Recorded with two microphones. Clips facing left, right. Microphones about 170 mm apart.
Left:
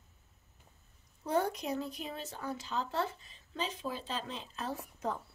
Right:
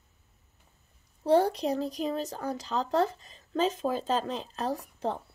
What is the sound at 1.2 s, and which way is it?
Speech, 35° right (ahead or behind).